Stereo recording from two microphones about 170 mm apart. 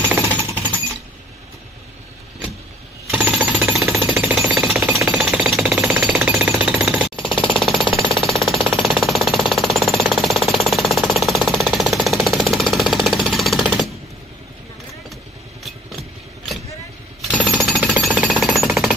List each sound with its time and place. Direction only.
3.1 s jackhammer: 10° right (ahead or behind)
5.0 s music: 5° right (ahead or behind)
5.8 s jackhammer: 10° right (ahead or behind)
7.2 s a sound: 30° left (ahead or behind)
7.5 s a sound: centre (ahead or behind)
7.9 s jackhammer: centre (ahead or behind)
15.6 s vehicle: centre (ahead or behind)
17.4 s jackhammer: centre (ahead or behind)